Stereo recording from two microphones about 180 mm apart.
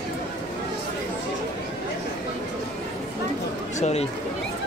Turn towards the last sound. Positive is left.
turn(degrees=35)  # may be behind; listen again after turning